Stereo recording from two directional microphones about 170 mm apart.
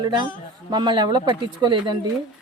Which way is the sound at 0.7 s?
25° right (ahead or behind).